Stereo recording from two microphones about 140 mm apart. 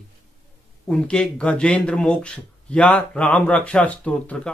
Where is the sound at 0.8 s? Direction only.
5° left (ahead or behind).